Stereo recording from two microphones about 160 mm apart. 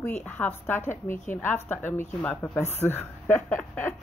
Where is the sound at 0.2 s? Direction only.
10° left (ahead or behind).